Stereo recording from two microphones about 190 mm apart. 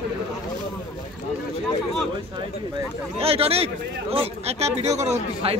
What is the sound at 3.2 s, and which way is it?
Speech, 30° right (ahead or behind).